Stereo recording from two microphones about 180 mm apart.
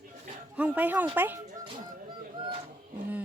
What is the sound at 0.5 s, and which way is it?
Speech, 10° right (ahead or behind).